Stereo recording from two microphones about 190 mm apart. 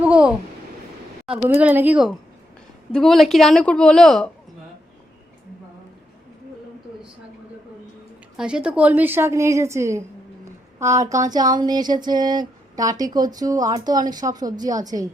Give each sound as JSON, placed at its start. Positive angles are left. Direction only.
{"t": 0.0, "sound": "a sound", "side_deg": -5}
{"t": 1.5, "sound": "a woman's voice", "side_deg": -10}
{"t": 8.4, "sound": "a woman's voice", "side_deg": -5}